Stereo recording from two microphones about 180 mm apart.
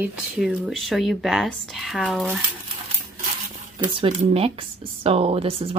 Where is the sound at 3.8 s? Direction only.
25° right (ahead or behind).